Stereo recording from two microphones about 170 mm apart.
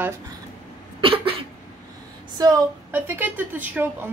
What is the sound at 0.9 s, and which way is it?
Cough, 30° right (ahead or behind).